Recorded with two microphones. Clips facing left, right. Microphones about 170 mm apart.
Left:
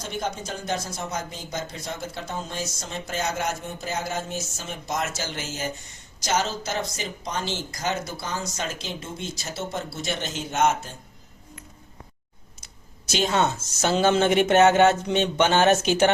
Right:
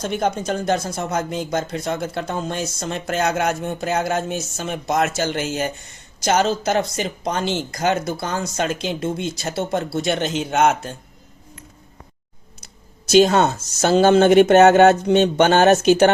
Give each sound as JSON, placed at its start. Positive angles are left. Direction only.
{"t": 0.0, "sound": "speech", "side_deg": -65}
{"t": 13.2, "sound": "speech", "side_deg": -60}
{"t": 13.6, "sound": "speech", "side_deg": -40}
{"t": 14.0, "sound": "speech", "side_deg": -50}
{"t": 14.8, "sound": "speech", "side_deg": -40}